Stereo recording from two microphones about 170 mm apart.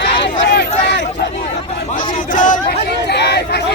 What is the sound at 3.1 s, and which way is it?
Speech, 80° left.